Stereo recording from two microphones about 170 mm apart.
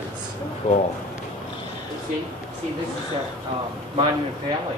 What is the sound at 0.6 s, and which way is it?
Speech, 40° left (ahead or behind).